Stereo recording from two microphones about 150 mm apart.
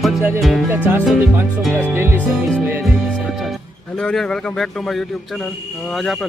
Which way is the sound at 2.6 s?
15° right (ahead or behind).